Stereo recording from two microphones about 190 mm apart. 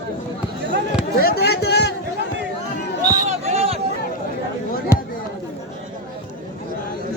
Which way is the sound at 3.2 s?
35° right (ahead or behind).